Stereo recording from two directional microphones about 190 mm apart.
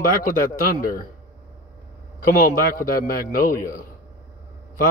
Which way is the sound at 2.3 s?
45° left (ahead or behind).